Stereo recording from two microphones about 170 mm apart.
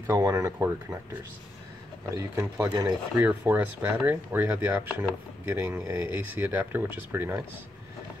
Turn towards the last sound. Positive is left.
turn(degrees=-15)  # may be behind; listen again after turning